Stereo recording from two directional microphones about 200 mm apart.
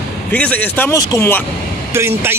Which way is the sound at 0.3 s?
5° left (ahead or behind).